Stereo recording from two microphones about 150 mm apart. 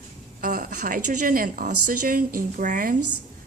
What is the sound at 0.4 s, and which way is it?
A woman's voice, 60° right (ahead or behind).